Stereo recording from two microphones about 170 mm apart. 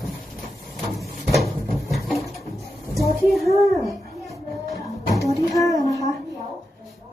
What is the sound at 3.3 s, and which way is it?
Speech, centre (ahead or behind).